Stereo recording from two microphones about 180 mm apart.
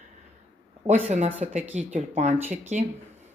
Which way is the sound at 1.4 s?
45° right (ahead or behind).